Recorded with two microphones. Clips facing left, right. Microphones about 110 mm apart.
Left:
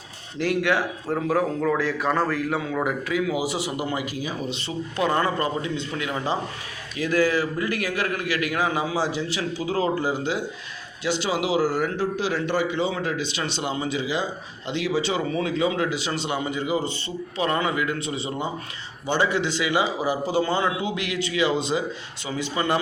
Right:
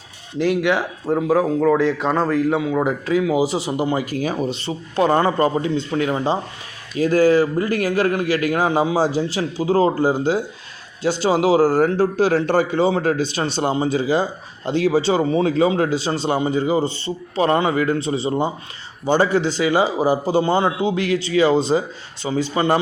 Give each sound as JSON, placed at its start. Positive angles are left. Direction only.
{"t": 0.3, "sound": "speech", "side_deg": -20}
{"t": 3.1, "sound": "speech", "side_deg": -30}
{"t": 4.0, "sound": "a man's voice", "side_deg": -50}